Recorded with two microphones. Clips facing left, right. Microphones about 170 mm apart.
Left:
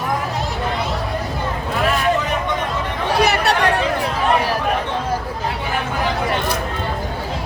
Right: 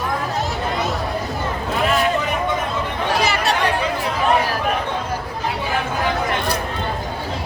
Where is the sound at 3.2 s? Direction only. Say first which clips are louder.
Left 5 dB; 65° left (ahead or behind).